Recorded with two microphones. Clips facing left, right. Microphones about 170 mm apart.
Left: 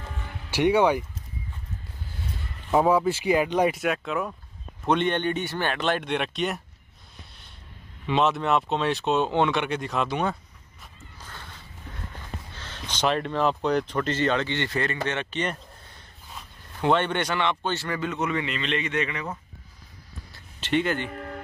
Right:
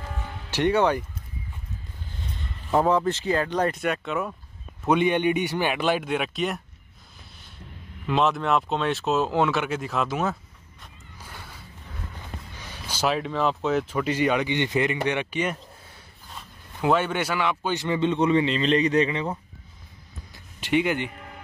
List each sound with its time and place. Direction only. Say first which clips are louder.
0.5 s speech: left 1 dB; 10° left (ahead or behind)
2.7 s speech: left 1 dB; 5° left (ahead or behind)
3.8 s speech: even; centre (ahead or behind)
8.1 s speech: even; centre (ahead or behind)
11.1 s a sound: right 1 dB; 10° right (ahead or behind)
12.5 s speech: even; 10° right (ahead or behind)
17.7 s a man's voice: right 6 dB; 20° right (ahead or behind)
20.3 s a sound: right 2 dB; 15° right (ahead or behind)
21.1 s music: left 7 dB; 50° left (ahead or behind)